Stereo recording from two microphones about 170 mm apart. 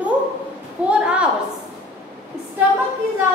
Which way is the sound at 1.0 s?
5° right (ahead or behind).